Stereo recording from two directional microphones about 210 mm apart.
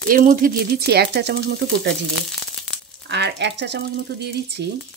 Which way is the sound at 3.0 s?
55° right (ahead or behind).